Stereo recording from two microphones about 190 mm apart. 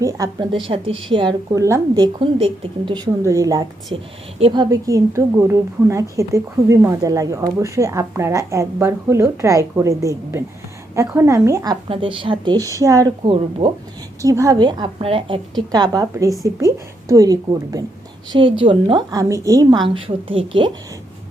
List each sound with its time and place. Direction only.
0.0 s a woman's voice: 15° right (ahead or behind)
14.2 s a woman's voice: 15° right (ahead or behind)
19.9 s a woman's voice: 30° right (ahead or behind)